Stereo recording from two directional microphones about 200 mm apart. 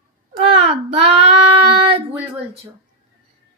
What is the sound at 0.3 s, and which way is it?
Child singing, 30° right (ahead or behind).